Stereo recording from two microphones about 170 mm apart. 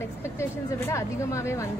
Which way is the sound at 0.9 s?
15° left (ahead or behind).